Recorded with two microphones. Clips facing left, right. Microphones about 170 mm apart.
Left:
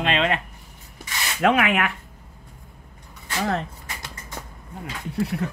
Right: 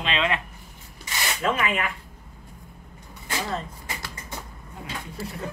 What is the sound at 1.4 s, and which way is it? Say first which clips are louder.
Speech: left 6 dB; 70° left (ahead or behind).